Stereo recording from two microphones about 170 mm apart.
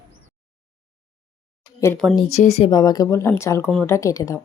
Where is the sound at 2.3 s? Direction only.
40° left (ahead or behind).